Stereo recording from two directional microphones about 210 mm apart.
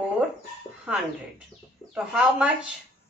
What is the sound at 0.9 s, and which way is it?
Speech, 5° right (ahead or behind).